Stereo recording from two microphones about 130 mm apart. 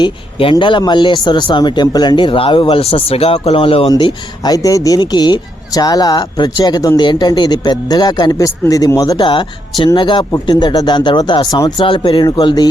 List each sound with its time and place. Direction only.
0.0 s speech: 45° left (ahead or behind)